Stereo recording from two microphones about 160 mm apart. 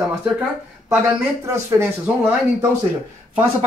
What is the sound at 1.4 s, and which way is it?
Speech, 20° right (ahead or behind).